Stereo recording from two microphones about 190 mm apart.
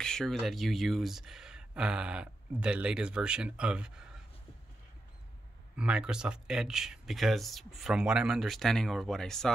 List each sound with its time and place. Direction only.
0.0 s speech: 5° left (ahead or behind)
5.8 s speech: 5° right (ahead or behind)